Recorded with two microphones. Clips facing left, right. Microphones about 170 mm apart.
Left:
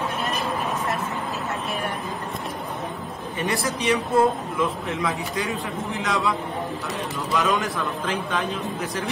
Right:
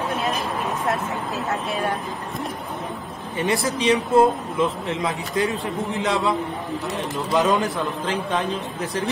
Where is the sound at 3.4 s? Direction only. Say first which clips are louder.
Right 4 dB; 20° right (ahead or behind).